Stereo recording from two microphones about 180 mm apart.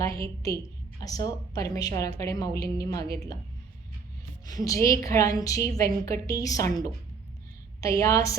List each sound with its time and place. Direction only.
0.0 s a woman's voice: 15° left (ahead or behind)
4.4 s a woman's voice: 20° left (ahead or behind)